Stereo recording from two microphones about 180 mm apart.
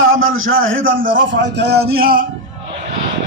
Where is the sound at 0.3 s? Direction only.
90° right.